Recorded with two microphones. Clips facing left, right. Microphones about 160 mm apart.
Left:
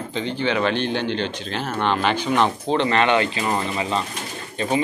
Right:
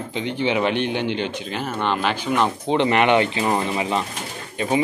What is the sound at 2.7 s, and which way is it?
Speech, 15° right (ahead or behind).